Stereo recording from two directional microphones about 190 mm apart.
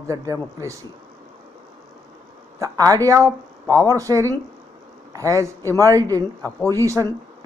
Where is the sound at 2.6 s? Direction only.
20° right (ahead or behind).